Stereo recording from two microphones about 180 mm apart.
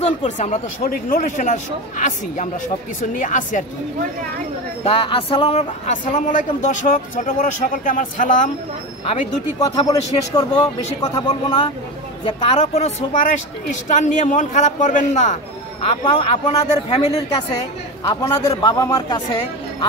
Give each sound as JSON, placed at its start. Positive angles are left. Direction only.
{"t": 0.0, "sound": "speech", "side_deg": 40}
{"t": 4.8, "sound": "speech", "side_deg": 30}
{"t": 9.8, "sound": "a man's voice", "side_deg": 20}
{"t": 15.8, "sound": "a man's voice", "side_deg": 30}
{"t": 18.0, "sound": "a man's voice", "side_deg": 20}